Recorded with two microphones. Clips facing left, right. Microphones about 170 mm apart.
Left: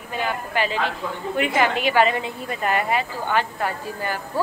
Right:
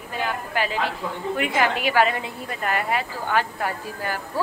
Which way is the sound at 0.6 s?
5° right (ahead or behind).